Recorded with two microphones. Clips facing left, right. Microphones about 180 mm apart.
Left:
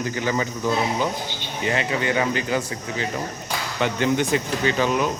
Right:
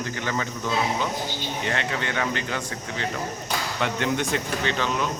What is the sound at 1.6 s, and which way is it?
A man's voice, 5° left (ahead or behind).